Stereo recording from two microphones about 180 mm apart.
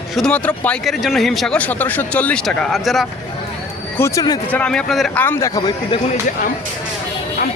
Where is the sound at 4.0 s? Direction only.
20° left (ahead or behind).